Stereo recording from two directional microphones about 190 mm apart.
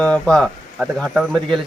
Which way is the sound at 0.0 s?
5° left (ahead or behind).